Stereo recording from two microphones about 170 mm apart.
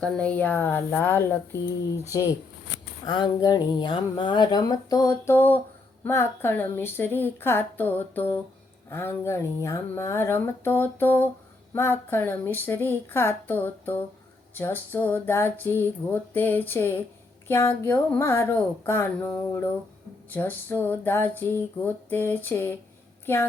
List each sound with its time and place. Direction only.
0.0 s speech: 5° left (ahead or behind)
3.1 s a woman's voice: 25° left (ahead or behind)